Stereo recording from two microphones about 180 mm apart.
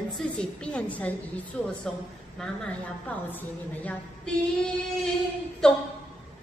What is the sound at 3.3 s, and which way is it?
A woman's voice, 10° left (ahead or behind).